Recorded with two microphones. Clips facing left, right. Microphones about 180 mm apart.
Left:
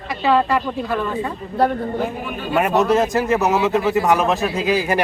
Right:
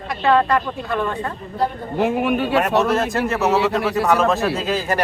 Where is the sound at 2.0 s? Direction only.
70° right (ahead or behind).